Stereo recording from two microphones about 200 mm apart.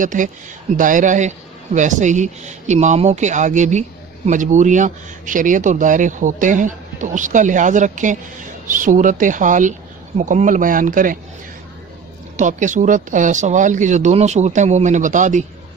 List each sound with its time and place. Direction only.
0.0 s speech: 40° right (ahead or behind)
12.4 s speech: 40° right (ahead or behind)